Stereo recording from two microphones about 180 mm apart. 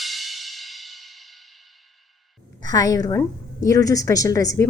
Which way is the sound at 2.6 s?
20° left (ahead or behind).